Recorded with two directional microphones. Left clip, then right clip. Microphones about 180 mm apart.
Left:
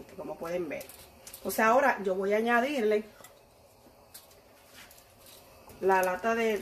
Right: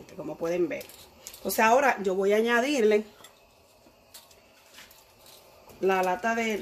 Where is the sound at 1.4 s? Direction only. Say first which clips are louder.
Right 3 dB; 50° right (ahead or behind).